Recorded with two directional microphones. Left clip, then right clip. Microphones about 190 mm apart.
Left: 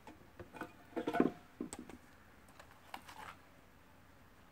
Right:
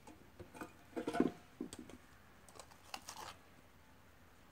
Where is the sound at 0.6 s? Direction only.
15° left (ahead or behind).